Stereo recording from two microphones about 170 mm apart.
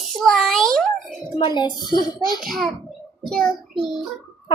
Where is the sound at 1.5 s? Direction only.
25° left (ahead or behind).